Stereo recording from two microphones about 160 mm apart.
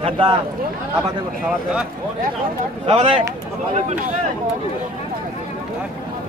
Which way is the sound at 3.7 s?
45° right (ahead or behind).